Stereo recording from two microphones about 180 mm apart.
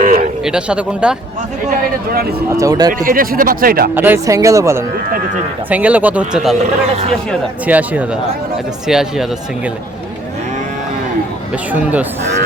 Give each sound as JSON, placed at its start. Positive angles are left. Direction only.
{"t": 0.0, "sound": "a sound", "side_deg": -50}
{"t": 0.4, "sound": "speech", "side_deg": -5}
{"t": 1.7, "sound": "speech", "side_deg": -60}
{"t": 2.6, "sound": "speech", "side_deg": -20}
{"t": 2.9, "sound": "speech", "side_deg": -50}
{"t": 3.9, "sound": "speech", "side_deg": -10}
{"t": 7.7, "sound": "speech", "side_deg": -10}
{"t": 11.5, "sound": "speech", "side_deg": -10}